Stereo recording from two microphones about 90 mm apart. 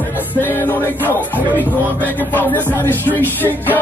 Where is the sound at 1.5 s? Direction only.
20° left (ahead or behind).